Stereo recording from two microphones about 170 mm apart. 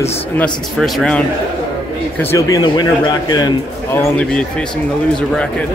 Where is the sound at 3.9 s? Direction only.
5° left (ahead or behind).